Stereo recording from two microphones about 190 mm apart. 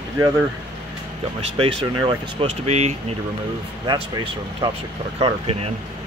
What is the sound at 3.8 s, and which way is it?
Speech, 25° right (ahead or behind).